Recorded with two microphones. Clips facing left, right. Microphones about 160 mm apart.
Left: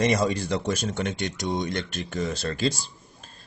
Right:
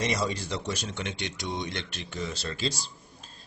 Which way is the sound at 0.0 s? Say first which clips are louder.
Left 6 dB; 50° left (ahead or behind).